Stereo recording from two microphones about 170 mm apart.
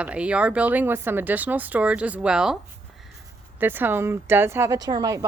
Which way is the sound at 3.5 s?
10° right (ahead or behind).